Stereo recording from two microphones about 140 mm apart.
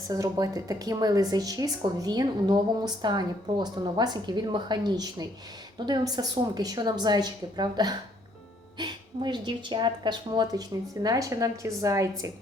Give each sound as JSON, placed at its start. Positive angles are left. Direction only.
{"t": 0.1, "sound": "a woman's voice", "side_deg": -25}